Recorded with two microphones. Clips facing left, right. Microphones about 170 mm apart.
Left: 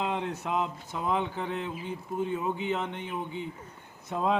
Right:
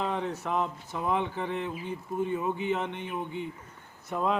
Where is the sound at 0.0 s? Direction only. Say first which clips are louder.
Even; 20° left (ahead or behind).